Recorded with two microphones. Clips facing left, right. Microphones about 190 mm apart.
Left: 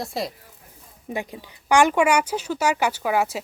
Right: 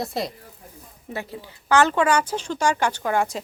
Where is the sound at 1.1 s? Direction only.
15° left (ahead or behind).